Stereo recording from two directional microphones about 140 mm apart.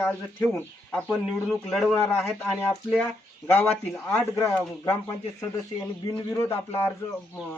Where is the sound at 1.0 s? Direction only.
Centre (ahead or behind).